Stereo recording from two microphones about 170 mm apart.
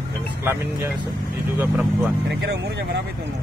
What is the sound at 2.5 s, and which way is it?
Speech, 80° right.